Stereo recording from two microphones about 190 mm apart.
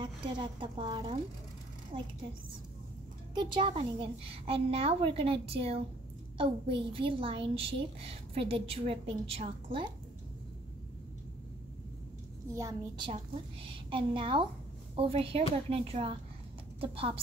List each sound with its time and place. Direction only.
0.0 s a woman's voice: 25° right (ahead or behind)
3.3 s a woman's voice: 25° right (ahead or behind)
12.5 s a woman's voice: 20° right (ahead or behind)